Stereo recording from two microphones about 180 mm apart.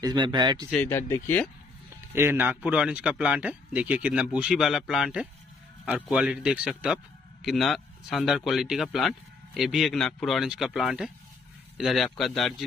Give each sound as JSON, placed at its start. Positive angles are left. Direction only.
{"t": 0.0, "sound": "speech", "side_deg": -25}
{"t": 0.7, "sound": "speech", "side_deg": 10}
{"t": 2.1, "sound": "speech", "side_deg": -10}